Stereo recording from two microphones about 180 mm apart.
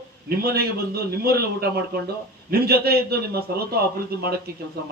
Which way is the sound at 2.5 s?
60° right (ahead or behind).